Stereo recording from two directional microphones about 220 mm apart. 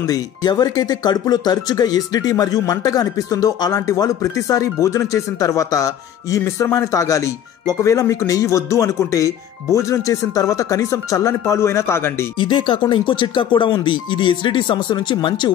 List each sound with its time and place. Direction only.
0.0 s speech: 15° left (ahead or behind)
12.4 s speech: 20° left (ahead or behind)